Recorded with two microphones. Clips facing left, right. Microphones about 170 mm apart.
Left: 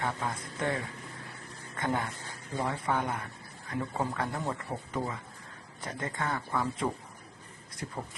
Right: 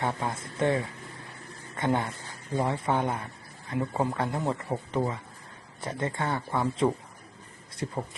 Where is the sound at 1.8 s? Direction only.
25° right (ahead or behind).